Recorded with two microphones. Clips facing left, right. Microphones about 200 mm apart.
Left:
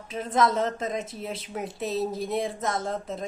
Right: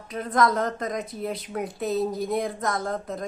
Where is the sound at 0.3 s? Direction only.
5° left (ahead or behind).